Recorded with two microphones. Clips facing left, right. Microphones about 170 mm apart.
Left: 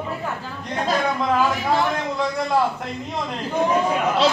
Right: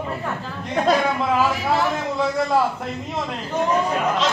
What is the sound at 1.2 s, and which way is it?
Speech, 5° right (ahead or behind).